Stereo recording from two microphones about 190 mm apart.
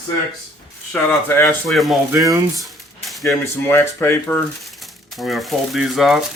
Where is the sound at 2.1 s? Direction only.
15° right (ahead or behind).